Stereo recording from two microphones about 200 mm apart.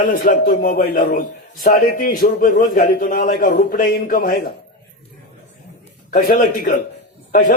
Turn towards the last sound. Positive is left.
turn(degrees=45)  # may be behind; listen again after turning